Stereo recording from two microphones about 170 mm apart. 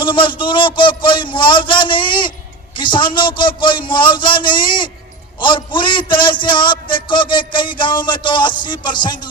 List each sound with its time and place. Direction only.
0.0 s a man's voice: 30° left (ahead or behind)